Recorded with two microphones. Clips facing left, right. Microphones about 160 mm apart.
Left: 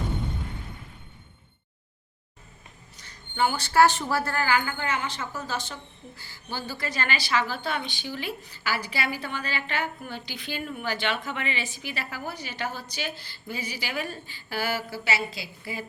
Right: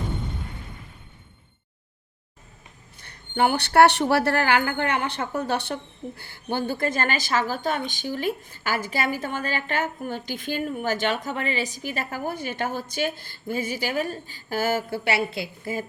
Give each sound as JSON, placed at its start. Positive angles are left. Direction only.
{"t": 3.0, "sound": "a woman's voice", "side_deg": -60}